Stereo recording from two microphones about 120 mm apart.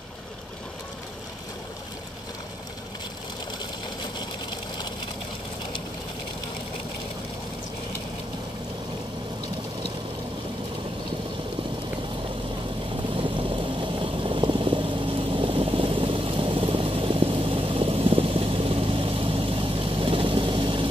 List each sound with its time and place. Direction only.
13.1 s vehicle: 45° right (ahead or behind)